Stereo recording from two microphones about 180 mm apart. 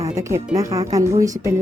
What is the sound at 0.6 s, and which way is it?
Speech, 20° right (ahead or behind).